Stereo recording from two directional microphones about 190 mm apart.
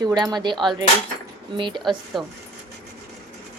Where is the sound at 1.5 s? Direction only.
25° right (ahead or behind).